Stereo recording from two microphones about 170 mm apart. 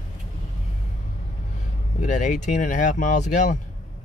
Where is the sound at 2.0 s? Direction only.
45° left (ahead or behind).